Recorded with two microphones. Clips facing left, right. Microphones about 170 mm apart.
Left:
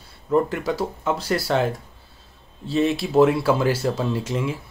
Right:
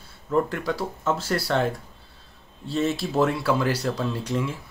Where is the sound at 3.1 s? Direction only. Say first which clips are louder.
Left 7 dB; 20° left (ahead or behind).